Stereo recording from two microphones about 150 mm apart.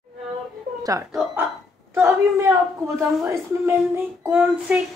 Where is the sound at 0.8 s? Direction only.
20° right (ahead or behind).